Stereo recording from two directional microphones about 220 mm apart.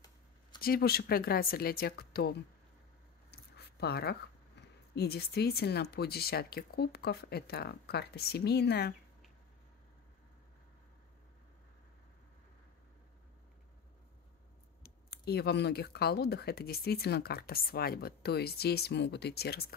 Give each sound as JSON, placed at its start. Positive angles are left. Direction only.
{"t": 0.6, "sound": "speech", "side_deg": 45}
{"t": 14.8, "sound": "speech", "side_deg": 45}